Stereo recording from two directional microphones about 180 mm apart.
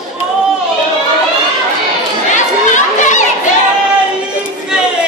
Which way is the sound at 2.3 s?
45° left (ahead or behind).